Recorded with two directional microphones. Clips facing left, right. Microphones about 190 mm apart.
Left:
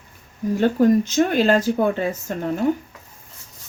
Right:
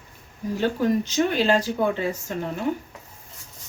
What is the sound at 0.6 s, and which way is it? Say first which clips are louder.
Speech: left 6 dB; 45° left (ahead or behind).